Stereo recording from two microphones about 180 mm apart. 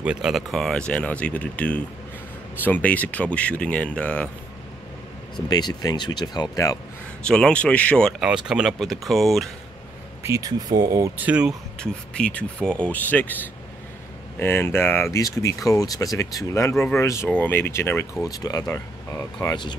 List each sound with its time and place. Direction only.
0.0 s speech: 5° right (ahead or behind)
5.5 s speech: 20° left (ahead or behind)
7.2 s speech: 5° left (ahead or behind)
10.2 s speech: 20° right (ahead or behind)
11.8 s speech: 5° left (ahead or behind); by 19.7 s 25° left (ahead or behind)